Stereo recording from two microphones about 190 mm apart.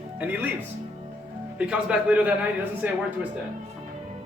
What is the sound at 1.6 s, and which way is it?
A man's voice, 5° right (ahead or behind).